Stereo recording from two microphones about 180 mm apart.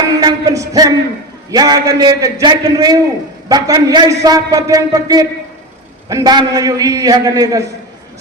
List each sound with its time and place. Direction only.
0.2 s a man's voice: 20° right (ahead or behind)